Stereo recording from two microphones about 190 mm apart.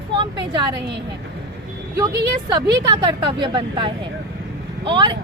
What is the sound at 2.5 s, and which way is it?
Speech, 20° right (ahead or behind).